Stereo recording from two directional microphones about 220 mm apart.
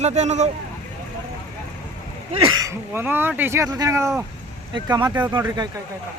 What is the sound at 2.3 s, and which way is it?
Speech, 15° right (ahead or behind).